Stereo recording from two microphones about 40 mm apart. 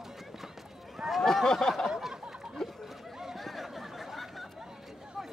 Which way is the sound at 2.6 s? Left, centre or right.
Centre.